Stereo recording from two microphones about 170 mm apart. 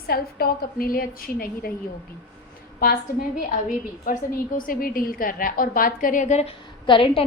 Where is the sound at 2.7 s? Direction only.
60° left (ahead or behind); by 7.2 s 30° left (ahead or behind).